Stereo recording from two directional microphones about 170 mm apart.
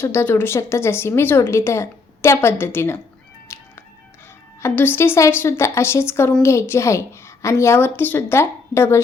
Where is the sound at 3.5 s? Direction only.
15° left (ahead or behind).